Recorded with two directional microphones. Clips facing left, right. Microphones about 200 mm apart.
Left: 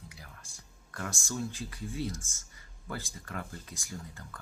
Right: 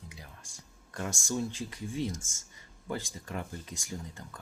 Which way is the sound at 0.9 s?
20° right (ahead or behind).